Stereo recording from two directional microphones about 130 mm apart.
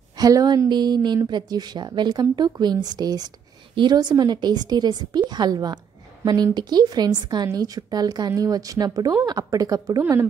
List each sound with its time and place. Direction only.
0.2 s a woman's voice: 30° right (ahead or behind)